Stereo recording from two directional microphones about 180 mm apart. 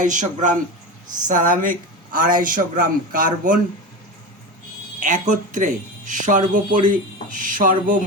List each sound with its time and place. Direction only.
0.0 s speech: 45° right (ahead or behind)
4.9 s speech: 45° right (ahead or behind)